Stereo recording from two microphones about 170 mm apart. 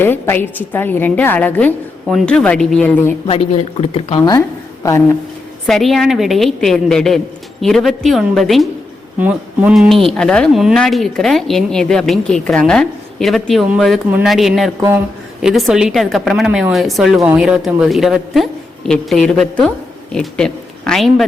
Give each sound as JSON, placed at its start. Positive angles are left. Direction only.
{"t": 0.0, "sound": "a woman's voice", "side_deg": 10}
{"t": 3.2, "sound": "speech", "side_deg": 35}
{"t": 4.3, "sound": "a woman's voice", "side_deg": 20}
{"t": 5.6, "sound": "speech", "side_deg": 0}
{"t": 9.1, "sound": "speech", "side_deg": -10}
{"t": 14.8, "sound": "speech", "side_deg": -20}
{"t": 15.4, "sound": "a woman's voice", "side_deg": 0}